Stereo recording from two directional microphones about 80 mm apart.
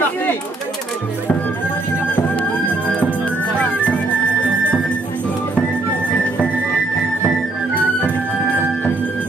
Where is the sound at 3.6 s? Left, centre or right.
Centre.